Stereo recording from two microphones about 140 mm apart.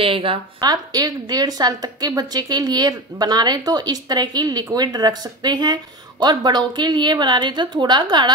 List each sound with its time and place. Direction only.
0.0 s a woman's voice: 40° right (ahead or behind)